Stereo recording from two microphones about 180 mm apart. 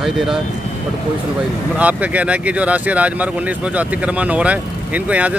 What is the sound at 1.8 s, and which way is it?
Speech, 10° right (ahead or behind).